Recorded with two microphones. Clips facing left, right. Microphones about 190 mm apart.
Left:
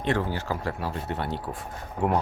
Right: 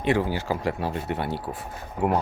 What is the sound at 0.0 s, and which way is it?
Speech, 10° right (ahead or behind).